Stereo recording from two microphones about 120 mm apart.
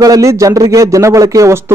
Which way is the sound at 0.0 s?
25° right (ahead or behind).